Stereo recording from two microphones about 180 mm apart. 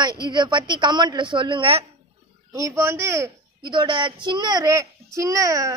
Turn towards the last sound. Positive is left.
turn(degrees=-20)  # may be behind; listen again after turning